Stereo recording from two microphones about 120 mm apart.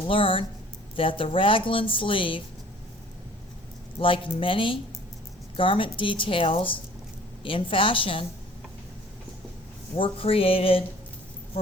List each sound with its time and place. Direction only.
0.1 s speech: 50° left (ahead or behind)
3.9 s speech: 45° left (ahead or behind)
9.9 s speech: 45° left (ahead or behind)